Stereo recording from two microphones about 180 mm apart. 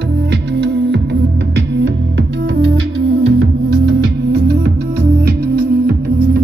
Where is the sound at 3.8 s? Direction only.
60° right (ahead or behind).